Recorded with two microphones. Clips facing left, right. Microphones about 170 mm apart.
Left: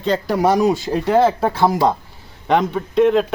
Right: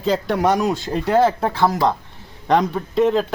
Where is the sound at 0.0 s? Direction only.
Centre (ahead or behind).